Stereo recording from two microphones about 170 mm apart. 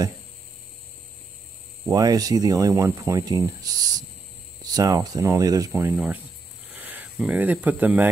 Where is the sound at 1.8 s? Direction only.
20° right (ahead or behind).